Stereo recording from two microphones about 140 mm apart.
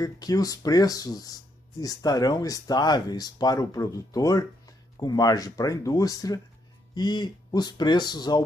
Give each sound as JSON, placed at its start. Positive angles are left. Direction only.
{"t": 0.0, "sound": "speech", "side_deg": 25}